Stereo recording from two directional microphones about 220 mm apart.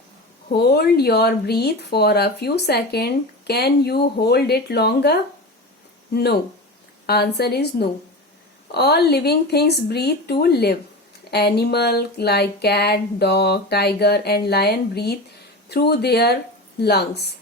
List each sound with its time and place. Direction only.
0.5 s speech: 45° left (ahead or behind)
7.1 s speech: 50° left (ahead or behind)